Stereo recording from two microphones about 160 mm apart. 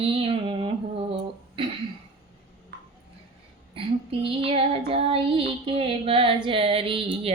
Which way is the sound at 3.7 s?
35° right (ahead or behind).